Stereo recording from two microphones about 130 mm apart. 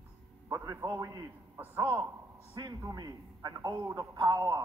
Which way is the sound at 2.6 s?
30° right (ahead or behind).